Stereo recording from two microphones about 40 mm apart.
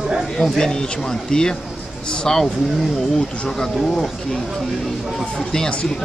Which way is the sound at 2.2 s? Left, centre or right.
Centre.